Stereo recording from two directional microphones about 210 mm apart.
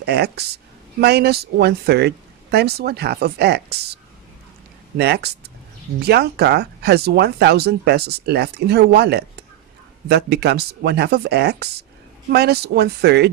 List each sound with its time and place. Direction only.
0.0 s speech: 50° right (ahead or behind)